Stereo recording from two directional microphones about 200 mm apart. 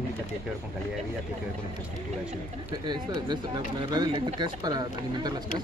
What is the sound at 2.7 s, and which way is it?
Speech, 20° right (ahead or behind).